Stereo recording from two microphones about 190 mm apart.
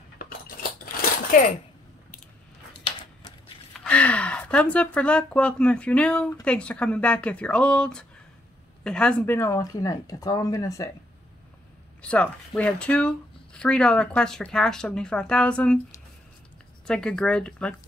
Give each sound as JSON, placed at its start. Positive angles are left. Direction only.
{"t": 2.8, "sound": "a sound", "side_deg": 25}
{"t": 3.8, "sound": "speech", "side_deg": 5}
{"t": 12.0, "sound": "speech", "side_deg": 5}
{"t": 16.8, "sound": "speech", "side_deg": 5}